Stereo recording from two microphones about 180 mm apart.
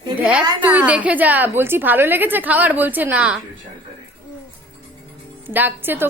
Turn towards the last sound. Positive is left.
turn(degrees=-10)  # may be behind; listen again after turning